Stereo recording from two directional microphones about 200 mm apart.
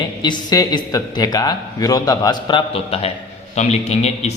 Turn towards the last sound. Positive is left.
turn(degrees=35)  # may be behind; listen again after turning